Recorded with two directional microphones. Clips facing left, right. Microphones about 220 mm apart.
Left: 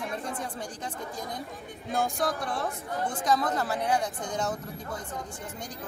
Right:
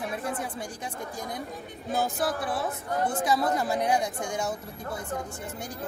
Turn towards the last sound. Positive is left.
turn(degrees=-10)  # may be behind; listen again after turning